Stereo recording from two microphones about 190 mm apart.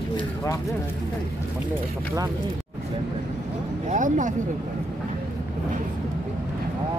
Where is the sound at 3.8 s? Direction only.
40° right (ahead or behind).